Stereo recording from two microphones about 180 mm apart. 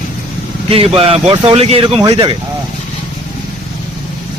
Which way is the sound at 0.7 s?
30° right (ahead or behind).